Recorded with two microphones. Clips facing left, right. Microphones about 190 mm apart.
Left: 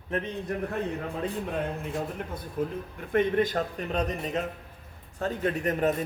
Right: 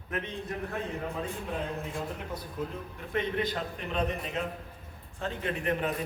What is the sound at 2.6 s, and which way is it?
A man's voice, 50° left (ahead or behind).